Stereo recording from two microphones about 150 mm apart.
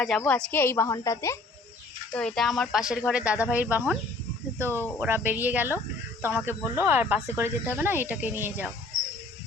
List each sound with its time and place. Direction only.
0.2 s a woman's voice: 10° left (ahead or behind)
2.1 s speech: 5° left (ahead or behind)
4.7 s a woman's voice: 15° left (ahead or behind)
4.9 s speech: 15° right (ahead or behind)